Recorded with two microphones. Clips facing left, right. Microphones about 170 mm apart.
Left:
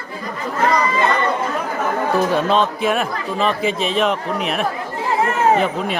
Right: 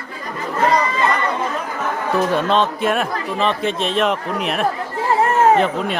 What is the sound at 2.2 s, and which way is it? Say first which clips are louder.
Speech: right 1 dB; centre (ahead or behind).